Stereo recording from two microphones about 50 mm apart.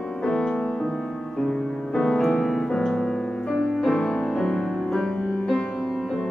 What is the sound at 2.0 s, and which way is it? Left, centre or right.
Music, centre.